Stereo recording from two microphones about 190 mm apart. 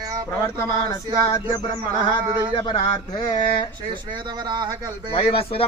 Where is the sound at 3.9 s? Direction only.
25° right (ahead or behind).